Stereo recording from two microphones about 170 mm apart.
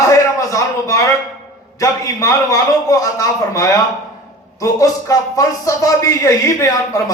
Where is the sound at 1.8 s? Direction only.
20° left (ahead or behind).